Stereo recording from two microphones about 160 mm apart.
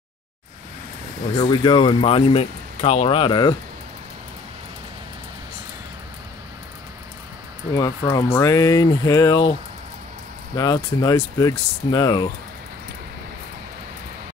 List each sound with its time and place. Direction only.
1.4 s speech: 30° left (ahead or behind)
7.7 s speech: 25° left (ahead or behind)
10.5 s speech: 25° left (ahead or behind)